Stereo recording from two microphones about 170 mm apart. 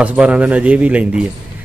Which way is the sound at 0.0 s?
5° right (ahead or behind).